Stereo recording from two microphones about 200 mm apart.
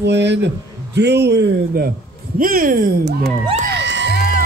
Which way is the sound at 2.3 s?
45° right (ahead or behind).